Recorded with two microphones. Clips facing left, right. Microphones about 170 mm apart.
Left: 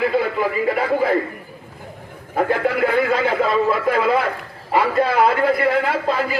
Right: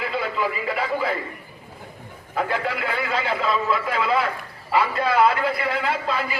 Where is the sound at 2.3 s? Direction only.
50° left (ahead or behind).